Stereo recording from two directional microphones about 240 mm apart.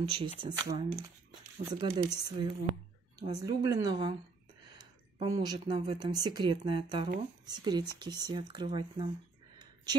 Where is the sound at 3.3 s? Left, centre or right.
Centre.